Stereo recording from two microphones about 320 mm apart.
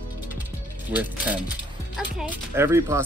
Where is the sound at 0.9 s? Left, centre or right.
Centre.